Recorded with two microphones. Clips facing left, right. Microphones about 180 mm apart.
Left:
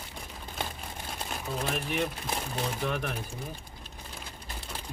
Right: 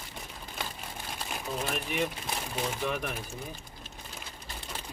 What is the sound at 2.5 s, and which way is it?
Speech, 5° right (ahead or behind).